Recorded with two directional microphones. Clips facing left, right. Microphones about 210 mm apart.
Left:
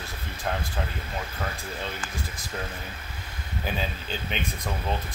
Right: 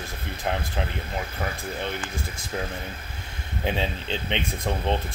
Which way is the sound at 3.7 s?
25° right (ahead or behind).